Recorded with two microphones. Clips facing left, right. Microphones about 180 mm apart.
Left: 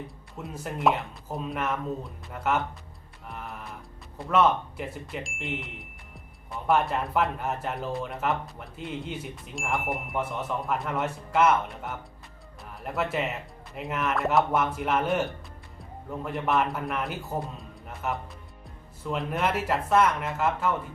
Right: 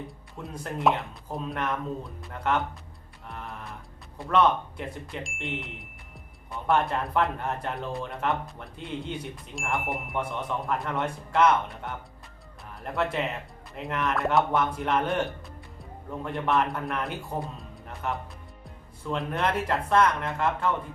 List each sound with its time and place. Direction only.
0.3 s speech: 5° left (ahead or behind)
3.2 s music: 5° left (ahead or behind)
4.3 s a man's voice: 5° left (ahead or behind)